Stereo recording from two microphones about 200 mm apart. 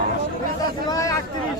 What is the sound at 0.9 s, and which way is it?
Speech, 15° left (ahead or behind).